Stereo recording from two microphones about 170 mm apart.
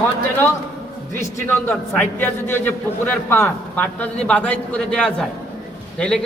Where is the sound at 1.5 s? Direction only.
10° left (ahead or behind).